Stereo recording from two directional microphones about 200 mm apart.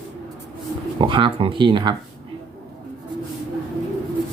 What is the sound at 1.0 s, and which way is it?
Speech, 25° right (ahead or behind).